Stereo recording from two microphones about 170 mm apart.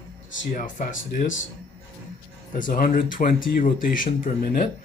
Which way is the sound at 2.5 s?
50° left (ahead or behind).